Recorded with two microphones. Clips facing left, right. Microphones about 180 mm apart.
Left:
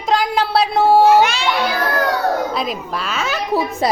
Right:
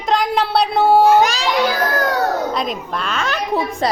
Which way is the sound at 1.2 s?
40° right (ahead or behind).